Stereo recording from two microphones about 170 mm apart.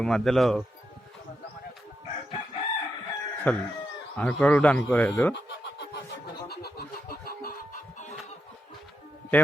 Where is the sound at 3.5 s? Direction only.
10° left (ahead or behind).